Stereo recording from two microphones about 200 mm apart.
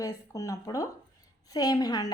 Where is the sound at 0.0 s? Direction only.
15° left (ahead or behind).